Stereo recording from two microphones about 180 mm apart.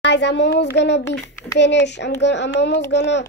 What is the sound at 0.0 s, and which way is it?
A child's voice, 75° left (ahead or behind).